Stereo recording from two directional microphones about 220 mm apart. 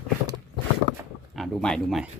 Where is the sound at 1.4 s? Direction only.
Centre (ahead or behind).